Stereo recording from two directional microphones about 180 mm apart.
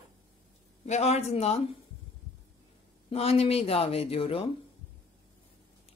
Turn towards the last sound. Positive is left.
turn(degrees=30)  # may be behind; listen again after turning